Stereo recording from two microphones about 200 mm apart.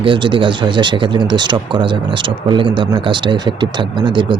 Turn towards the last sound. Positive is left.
turn(degrees=-25)  # may be behind; listen again after turning